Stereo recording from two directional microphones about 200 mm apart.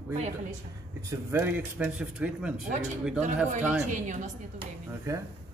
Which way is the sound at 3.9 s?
35° right (ahead or behind).